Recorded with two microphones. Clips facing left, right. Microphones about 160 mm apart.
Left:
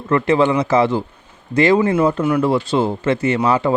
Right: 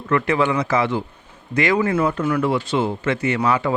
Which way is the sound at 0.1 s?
30° left (ahead or behind).